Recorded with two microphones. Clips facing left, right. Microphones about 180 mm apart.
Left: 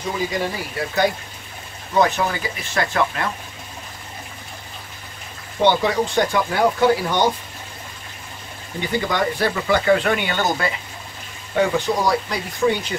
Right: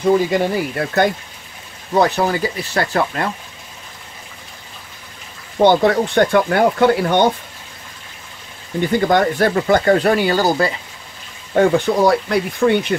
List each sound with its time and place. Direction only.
0.3 s speech: 55° right (ahead or behind)
2.0 s speech: 35° right (ahead or behind)
5.6 s speech: 50° right (ahead or behind)
9.0 s speech: 50° right (ahead or behind); by 10.7 s 35° right (ahead or behind)
11.5 s speech: 50° right (ahead or behind)